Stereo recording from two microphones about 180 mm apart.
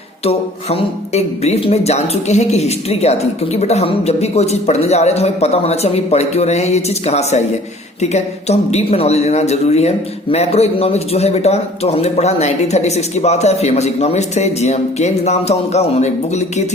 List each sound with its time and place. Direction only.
0.3 s speech: 35° left (ahead or behind)